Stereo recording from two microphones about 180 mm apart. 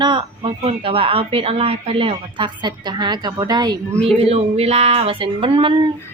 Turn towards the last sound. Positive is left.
turn(degrees=-30)  # may be behind; listen again after turning